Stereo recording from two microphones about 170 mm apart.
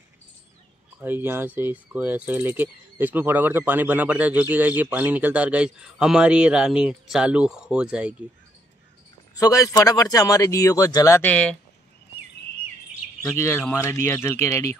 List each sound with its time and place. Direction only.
1.0 s speech: 10° right (ahead or behind)
9.3 s a man's voice: 20° left (ahead or behind)
13.2 s speech: 15° left (ahead or behind)